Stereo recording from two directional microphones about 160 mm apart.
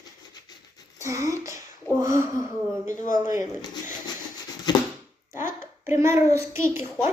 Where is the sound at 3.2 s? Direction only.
20° right (ahead or behind).